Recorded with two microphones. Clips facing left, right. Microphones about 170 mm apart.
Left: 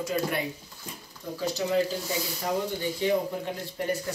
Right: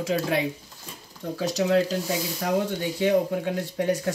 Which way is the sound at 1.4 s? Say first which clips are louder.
Right 4 dB; 85° right.